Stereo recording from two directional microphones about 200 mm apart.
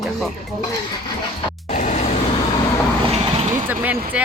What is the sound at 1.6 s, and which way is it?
Vehicle, 35° left (ahead or behind).